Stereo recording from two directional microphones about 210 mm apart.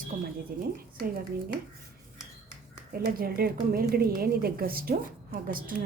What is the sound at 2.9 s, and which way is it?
A woman's voice, 45° right (ahead or behind).